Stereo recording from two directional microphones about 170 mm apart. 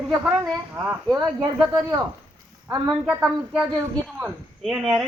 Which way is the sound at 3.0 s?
5° right (ahead or behind).